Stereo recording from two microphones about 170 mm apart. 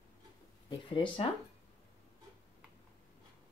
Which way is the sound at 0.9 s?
30° left (ahead or behind).